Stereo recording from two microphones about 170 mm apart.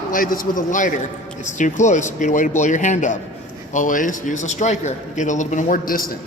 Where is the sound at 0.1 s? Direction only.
55° left (ahead or behind).